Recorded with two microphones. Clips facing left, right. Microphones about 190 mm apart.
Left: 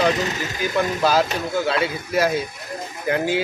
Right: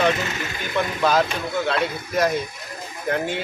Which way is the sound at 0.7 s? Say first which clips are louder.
Left 1 dB; 5° left (ahead or behind).